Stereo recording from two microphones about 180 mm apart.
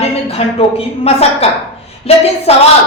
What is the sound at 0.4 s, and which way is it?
Speech, 35° left (ahead or behind).